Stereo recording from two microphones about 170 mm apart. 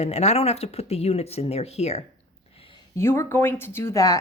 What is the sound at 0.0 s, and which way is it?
Speech, 40° left (ahead or behind).